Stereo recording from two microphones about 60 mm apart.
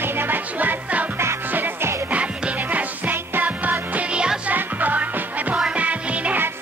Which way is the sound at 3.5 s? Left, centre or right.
Right.